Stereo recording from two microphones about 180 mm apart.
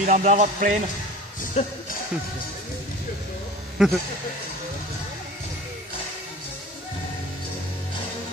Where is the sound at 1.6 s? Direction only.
35° left (ahead or behind).